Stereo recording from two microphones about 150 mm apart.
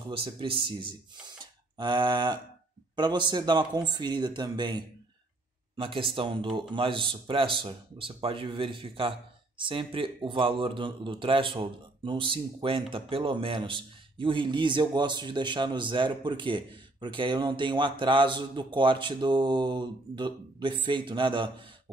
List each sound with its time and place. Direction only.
0.1 s a man's voice: 35° right (ahead or behind)